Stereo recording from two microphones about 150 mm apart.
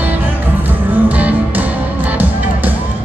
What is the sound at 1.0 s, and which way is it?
Music, 10° right (ahead or behind).